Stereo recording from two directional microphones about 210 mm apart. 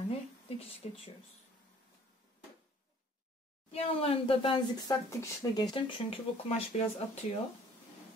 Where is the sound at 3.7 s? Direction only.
25° left (ahead or behind).